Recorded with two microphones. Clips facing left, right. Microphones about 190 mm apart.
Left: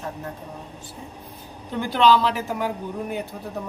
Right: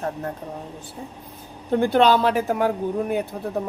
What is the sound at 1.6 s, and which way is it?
Speech, 55° right (ahead or behind).